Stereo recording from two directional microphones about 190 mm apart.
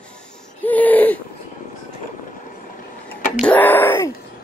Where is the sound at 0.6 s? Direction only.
10° left (ahead or behind).